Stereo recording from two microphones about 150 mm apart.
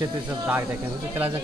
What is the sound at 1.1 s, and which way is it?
Speech, 15° right (ahead or behind).